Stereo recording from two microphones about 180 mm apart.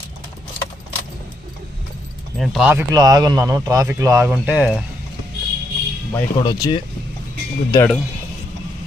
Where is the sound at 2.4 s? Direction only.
Centre (ahead or behind).